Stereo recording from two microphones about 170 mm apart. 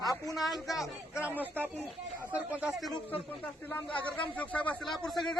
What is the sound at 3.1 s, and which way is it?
A man's voice, 10° left (ahead or behind).